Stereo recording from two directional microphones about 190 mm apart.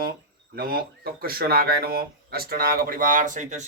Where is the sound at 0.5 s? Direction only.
50° right (ahead or behind).